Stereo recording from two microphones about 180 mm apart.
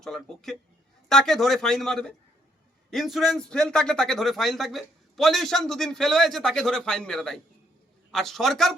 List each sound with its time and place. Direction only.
0.0 s a man's voice: centre (ahead or behind)